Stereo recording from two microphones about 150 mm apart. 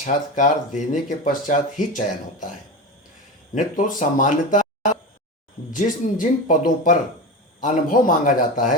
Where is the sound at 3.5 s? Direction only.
60° left (ahead or behind).